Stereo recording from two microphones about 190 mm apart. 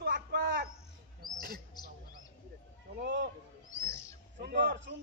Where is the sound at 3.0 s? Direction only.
65° right (ahead or behind).